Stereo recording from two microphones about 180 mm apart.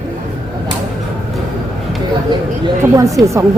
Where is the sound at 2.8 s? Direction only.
20° right (ahead or behind).